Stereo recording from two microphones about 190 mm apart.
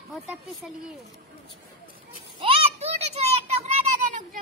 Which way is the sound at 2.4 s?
30° right (ahead or behind).